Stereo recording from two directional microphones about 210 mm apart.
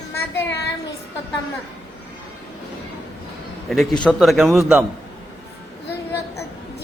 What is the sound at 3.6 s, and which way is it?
A man's voice, centre (ahead or behind).